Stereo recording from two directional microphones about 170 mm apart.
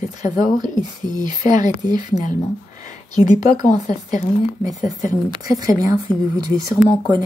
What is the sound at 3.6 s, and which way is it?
Speech, 45° left (ahead or behind).